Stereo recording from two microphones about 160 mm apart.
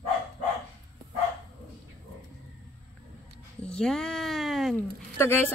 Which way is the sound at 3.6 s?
5° left (ahead or behind).